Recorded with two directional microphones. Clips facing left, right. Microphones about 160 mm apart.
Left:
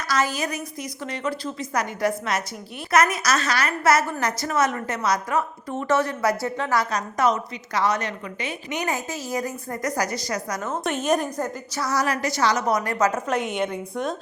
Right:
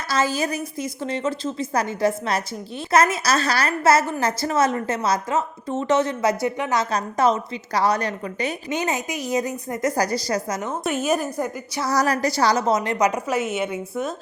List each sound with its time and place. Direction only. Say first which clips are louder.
0.1 s a woman's voice: right 2 dB; 30° right (ahead or behind)
6.9 s a woman's voice: right 2 dB; 30° right (ahead or behind)
8.8 s a woman's voice: even; 20° right (ahead or behind)
9.9 s a woman's voice: right 2 dB; 30° right (ahead or behind)
10.8 s a woman's voice: even; 5° right (ahead or behind)
11.8 s a woman's voice: right 3 dB; 35° right (ahead or behind); by 14.2 s 5° right (ahead or behind)